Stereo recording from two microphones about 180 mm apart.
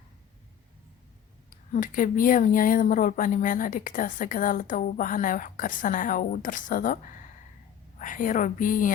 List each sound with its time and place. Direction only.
1.5 s speech: 50° left (ahead or behind)